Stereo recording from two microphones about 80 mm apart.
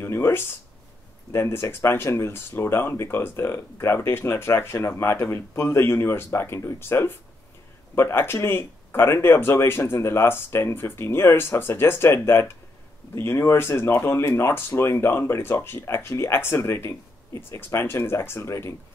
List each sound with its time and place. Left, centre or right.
0.0 s speech: left